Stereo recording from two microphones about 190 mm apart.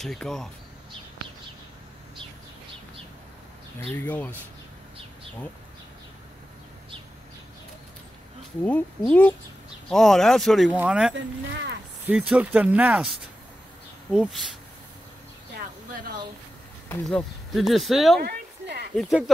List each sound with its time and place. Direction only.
0.0 s speech: centre (ahead or behind)
3.8 s speech: 10° left (ahead or behind)
8.6 s speech: 5° left (ahead or behind)
14.1 s speech: 5° right (ahead or behind)
16.9 s speech: centre (ahead or behind)
18.2 s a sound: 65° right (ahead or behind)
18.9 s speech: centre (ahead or behind)